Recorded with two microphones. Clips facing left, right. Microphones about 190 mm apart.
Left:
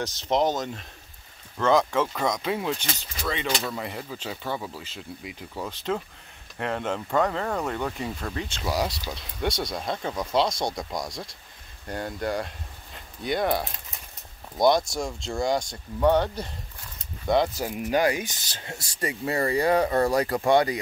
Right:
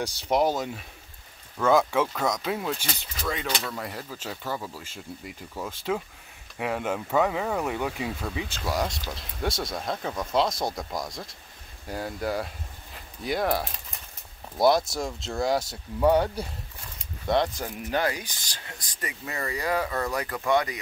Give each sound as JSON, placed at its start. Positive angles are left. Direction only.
{"t": 0.0, "sound": "speech", "side_deg": -10}
{"t": 2.9, "sound": "speech", "side_deg": -10}
{"t": 3.4, "sound": "speech", "side_deg": 10}
{"t": 5.9, "sound": "speech", "side_deg": -5}
{"t": 17.3, "sound": "speech", "side_deg": 5}